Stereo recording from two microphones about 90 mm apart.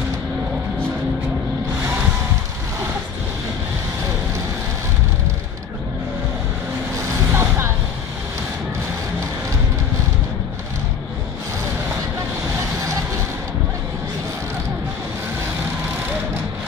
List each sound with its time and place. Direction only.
7.3 s music: 30° right (ahead or behind)